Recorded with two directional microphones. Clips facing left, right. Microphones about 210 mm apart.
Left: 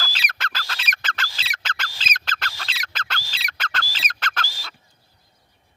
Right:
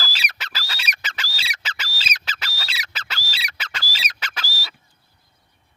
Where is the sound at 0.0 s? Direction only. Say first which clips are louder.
Left 2 dB; 5° right (ahead or behind).